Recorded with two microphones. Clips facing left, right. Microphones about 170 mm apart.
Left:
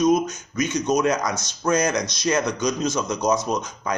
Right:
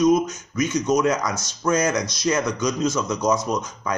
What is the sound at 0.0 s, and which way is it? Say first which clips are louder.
Speech: right 1 dB; 20° left (ahead or behind).